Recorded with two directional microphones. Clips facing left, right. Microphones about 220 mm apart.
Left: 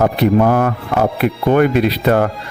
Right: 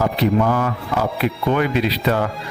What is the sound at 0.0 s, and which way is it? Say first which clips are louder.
Speech: left 5 dB; 55° left (ahead or behind).